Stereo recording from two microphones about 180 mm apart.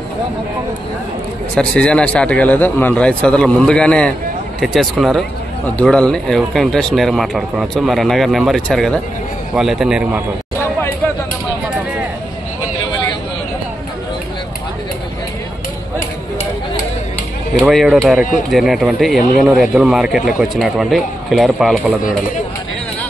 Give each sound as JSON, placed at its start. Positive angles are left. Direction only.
{"t": 1.5, "sound": "a man's voice", "side_deg": 5}
{"t": 17.6, "sound": "speech", "side_deg": 0}